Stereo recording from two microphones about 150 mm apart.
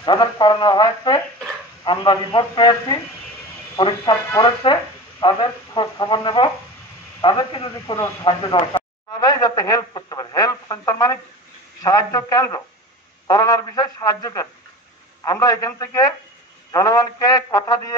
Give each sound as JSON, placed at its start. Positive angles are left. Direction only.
{"t": 0.0, "sound": "speech", "side_deg": 30}